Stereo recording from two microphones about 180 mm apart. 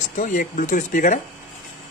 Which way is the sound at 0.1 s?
45° left (ahead or behind).